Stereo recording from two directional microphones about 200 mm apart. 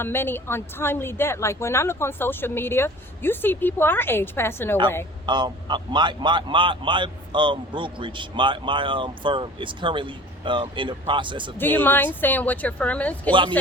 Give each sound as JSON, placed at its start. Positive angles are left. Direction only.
{"t": 0.0, "sound": "speech", "side_deg": 10}
{"t": 5.2, "sound": "a man's voice", "side_deg": -20}
{"t": 11.5, "sound": "speech", "side_deg": 10}